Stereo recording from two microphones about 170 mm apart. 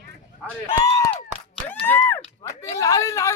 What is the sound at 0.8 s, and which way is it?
Speech, 15° left (ahead or behind).